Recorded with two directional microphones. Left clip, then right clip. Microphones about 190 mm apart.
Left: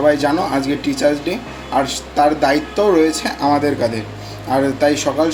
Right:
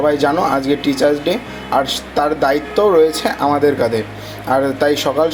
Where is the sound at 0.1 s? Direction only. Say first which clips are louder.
Right 1 dB; 20° right (ahead or behind).